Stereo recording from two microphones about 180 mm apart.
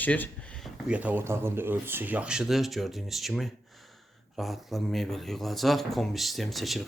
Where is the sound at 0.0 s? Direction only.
10° left (ahead or behind).